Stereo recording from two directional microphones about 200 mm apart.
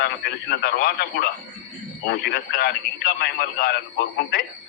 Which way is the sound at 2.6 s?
55° left (ahead or behind).